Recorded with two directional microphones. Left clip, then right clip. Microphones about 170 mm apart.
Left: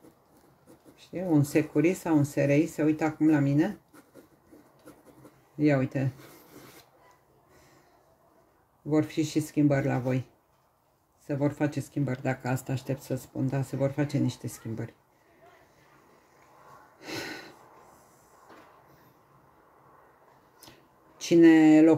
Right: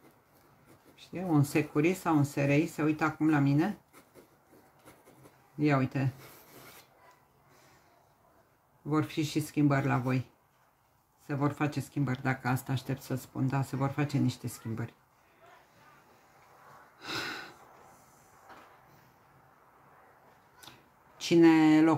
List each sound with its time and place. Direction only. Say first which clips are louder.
0.9 s speech: left 4 dB; 20° right (ahead or behind)
5.6 s speech: left 3 dB; 20° right (ahead or behind)
8.9 s speech: left 4 dB; 20° right (ahead or behind)
11.2 s speech: left 3 dB; 20° right (ahead or behind)
17.0 s a sound: right 1 dB; 15° right (ahead or behind)
21.3 s speech: left 4 dB; 20° right (ahead or behind)